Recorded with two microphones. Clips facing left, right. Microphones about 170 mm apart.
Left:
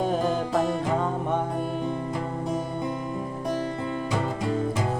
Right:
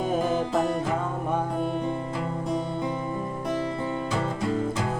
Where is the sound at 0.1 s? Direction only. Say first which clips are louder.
Even; 5° right (ahead or behind).